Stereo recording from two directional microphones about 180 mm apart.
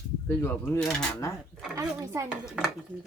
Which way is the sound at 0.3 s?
10° left (ahead or behind).